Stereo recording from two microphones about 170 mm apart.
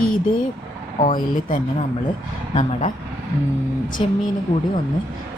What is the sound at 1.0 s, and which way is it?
Speech, 55° left (ahead or behind).